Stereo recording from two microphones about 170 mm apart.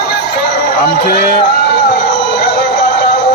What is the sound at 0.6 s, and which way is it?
Speech, 65° left (ahead or behind).